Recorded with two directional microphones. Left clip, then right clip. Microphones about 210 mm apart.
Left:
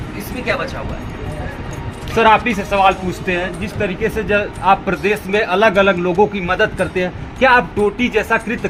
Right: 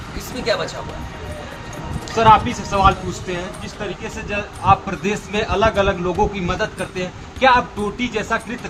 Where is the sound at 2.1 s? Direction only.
45° left (ahead or behind).